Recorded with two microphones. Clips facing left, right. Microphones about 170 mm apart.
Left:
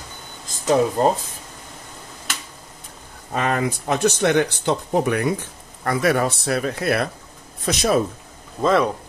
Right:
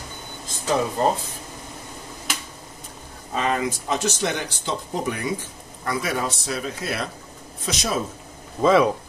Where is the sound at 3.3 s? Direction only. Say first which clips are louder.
Left 2 dB; 60° left (ahead or behind).